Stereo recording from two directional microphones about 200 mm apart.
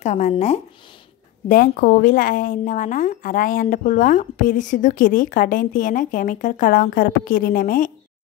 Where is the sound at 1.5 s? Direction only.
45° left (ahead or behind).